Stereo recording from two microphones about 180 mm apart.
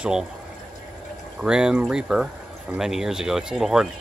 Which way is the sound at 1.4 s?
5° right (ahead or behind).